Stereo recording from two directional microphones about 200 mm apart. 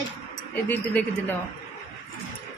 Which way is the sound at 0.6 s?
10° left (ahead or behind).